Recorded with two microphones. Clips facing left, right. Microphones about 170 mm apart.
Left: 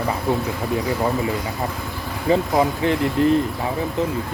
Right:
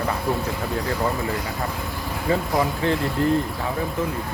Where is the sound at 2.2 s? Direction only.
20° left (ahead or behind).